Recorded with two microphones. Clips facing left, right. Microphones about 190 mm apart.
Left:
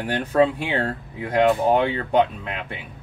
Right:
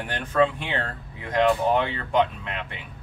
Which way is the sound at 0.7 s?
40° left (ahead or behind).